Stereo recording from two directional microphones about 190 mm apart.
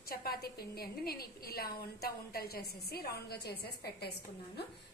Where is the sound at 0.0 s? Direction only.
50° left (ahead or behind).